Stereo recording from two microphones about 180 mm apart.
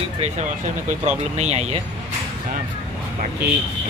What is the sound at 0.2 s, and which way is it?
Speech, 35° right (ahead or behind).